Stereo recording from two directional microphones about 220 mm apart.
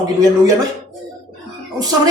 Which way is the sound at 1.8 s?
15° right (ahead or behind).